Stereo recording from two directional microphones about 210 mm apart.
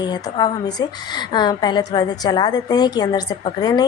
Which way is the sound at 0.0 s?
20° left (ahead or behind).